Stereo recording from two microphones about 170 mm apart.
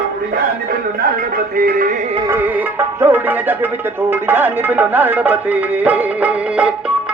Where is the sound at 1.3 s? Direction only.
60° right (ahead or behind).